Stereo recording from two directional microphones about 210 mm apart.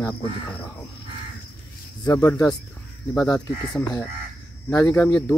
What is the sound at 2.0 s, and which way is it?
Speech, 10° left (ahead or behind).